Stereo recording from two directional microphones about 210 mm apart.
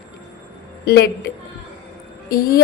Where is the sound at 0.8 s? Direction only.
50° left (ahead or behind).